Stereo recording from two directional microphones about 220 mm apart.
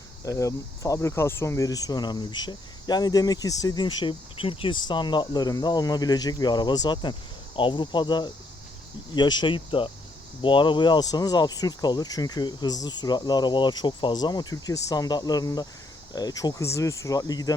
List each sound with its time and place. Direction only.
0.3 s speech: 15° left (ahead or behind)